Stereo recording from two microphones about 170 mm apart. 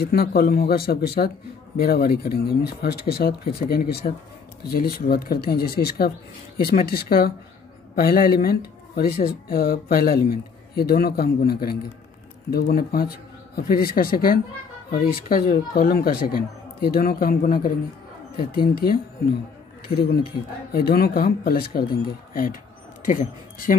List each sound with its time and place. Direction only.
0.0 s speech: 65° left (ahead or behind)
20.0 s speech: 65° left (ahead or behind)